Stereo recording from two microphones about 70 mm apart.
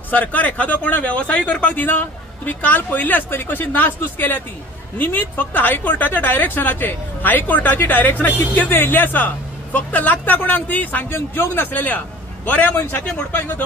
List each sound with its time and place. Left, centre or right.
0.1 s a woman's voice: left
11.1 s a woman's voice: left